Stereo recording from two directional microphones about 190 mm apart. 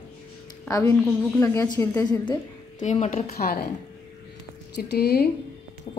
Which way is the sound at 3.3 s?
55° left (ahead or behind).